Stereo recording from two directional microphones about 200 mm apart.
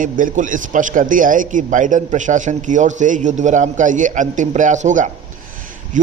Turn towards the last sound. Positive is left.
turn(degrees=-40)  # may be behind; listen again after turning